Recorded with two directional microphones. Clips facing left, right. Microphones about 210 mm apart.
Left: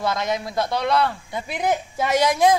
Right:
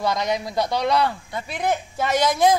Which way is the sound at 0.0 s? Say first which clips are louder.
Right 1 dB; 5° left (ahead or behind).